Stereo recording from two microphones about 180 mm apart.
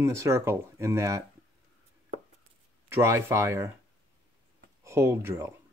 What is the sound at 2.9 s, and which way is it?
Speech, 15° right (ahead or behind).